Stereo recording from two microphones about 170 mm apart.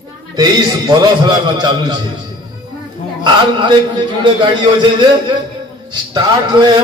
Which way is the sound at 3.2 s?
25° right (ahead or behind).